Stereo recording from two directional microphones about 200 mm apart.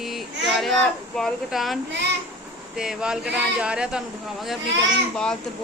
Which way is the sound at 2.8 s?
5° right (ahead or behind).